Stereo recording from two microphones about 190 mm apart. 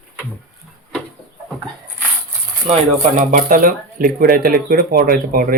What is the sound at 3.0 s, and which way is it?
Speech, 45° right (ahead or behind).